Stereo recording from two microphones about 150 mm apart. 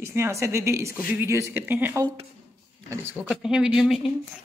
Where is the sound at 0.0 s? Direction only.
20° right (ahead or behind).